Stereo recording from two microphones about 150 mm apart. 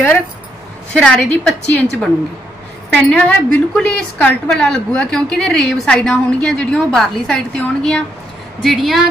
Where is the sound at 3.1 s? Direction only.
10° left (ahead or behind).